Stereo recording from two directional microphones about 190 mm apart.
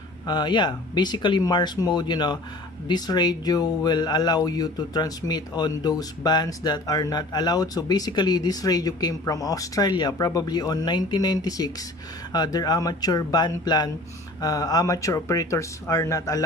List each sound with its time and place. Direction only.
0.3 s speech: 25° left (ahead or behind)